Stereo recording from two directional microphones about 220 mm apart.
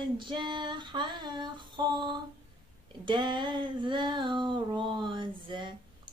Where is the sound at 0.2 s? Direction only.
20° right (ahead or behind).